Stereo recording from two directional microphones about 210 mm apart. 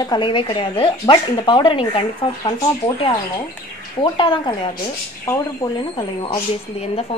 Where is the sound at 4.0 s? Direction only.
25° left (ahead or behind).